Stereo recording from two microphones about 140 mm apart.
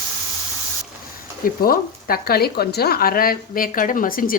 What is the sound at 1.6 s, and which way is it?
Speech, 90° left.